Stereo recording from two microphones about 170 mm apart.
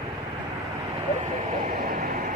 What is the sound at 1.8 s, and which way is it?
Vehicle, 60° right (ahead or behind).